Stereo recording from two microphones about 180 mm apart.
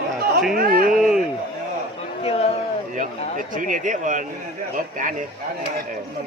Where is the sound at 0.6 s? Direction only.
55° right (ahead or behind).